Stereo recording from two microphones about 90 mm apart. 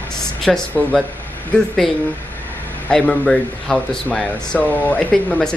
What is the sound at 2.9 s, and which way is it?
Speech, 10° left (ahead or behind).